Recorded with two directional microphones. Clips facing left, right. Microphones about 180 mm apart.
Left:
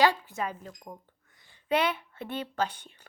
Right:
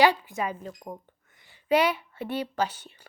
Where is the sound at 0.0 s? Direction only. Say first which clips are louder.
Right 3 dB; 15° right (ahead or behind).